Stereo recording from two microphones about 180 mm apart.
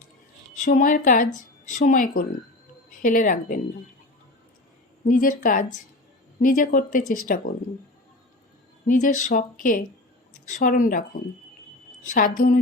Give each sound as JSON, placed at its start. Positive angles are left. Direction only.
{"t": 0.6, "sound": "speech", "side_deg": 45}
{"t": 5.0, "sound": "speech", "side_deg": 50}
{"t": 8.9, "sound": "speech", "side_deg": 45}
{"t": 12.0, "sound": "speech", "side_deg": 50}